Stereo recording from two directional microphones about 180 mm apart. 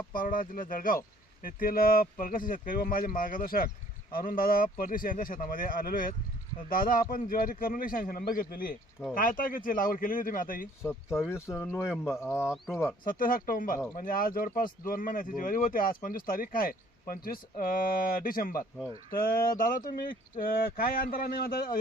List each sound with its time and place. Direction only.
0.1 s speech: 50° left (ahead or behind)
11.3 s speech: 15° left (ahead or behind)
13.1 s speech: 50° left (ahead or behind)